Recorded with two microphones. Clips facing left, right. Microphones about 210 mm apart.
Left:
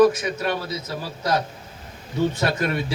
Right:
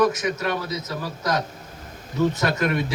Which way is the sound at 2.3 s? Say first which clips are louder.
Right 1 dB; 30° left (ahead or behind).